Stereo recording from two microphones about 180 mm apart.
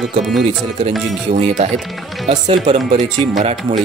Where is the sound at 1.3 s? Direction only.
35° right (ahead or behind).